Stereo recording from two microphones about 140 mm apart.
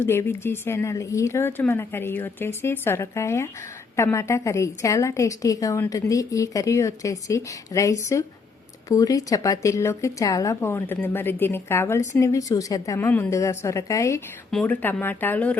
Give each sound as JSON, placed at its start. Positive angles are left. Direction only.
{"t": 0.0, "sound": "a woman's voice", "side_deg": 15}
{"t": 14.5, "sound": "a woman's voice", "side_deg": 10}